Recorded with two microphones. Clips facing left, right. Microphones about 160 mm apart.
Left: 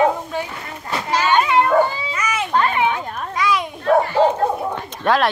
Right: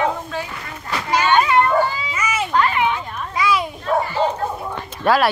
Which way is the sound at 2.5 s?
25° left (ahead or behind).